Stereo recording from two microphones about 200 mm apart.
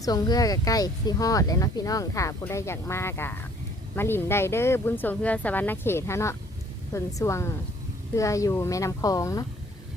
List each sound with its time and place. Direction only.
0.0 s speech: 20° left (ahead or behind)